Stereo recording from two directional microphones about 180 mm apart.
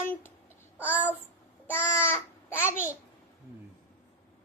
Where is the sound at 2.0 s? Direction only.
15° left (ahead or behind).